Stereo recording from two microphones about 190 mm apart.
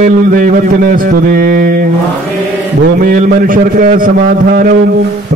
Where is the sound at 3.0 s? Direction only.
45° right (ahead or behind).